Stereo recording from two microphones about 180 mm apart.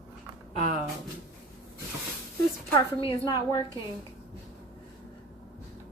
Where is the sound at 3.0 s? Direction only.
25° left (ahead or behind).